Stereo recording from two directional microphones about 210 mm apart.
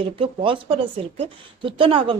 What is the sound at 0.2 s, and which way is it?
A woman's voice, 25° right (ahead or behind).